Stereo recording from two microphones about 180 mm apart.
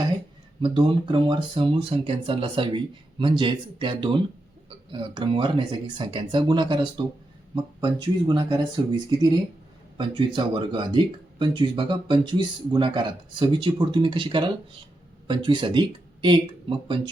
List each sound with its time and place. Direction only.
0.6 s speech: 30° right (ahead or behind)